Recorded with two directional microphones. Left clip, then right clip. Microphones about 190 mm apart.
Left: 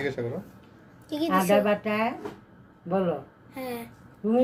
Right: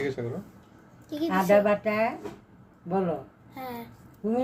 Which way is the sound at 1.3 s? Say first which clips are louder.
Right 1 dB; 15° right (ahead or behind).